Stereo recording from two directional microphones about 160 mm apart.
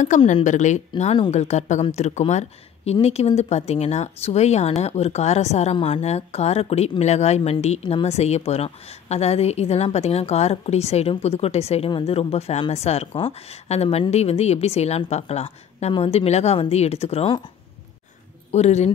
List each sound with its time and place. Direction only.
0.3 s a woman's voice: 50° left (ahead or behind)
18.5 s speech: 45° left (ahead or behind)